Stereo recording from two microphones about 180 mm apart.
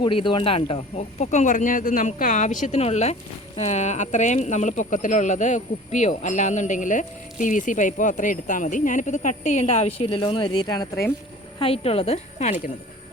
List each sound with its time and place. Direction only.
0.0 s speech: 30° left (ahead or behind)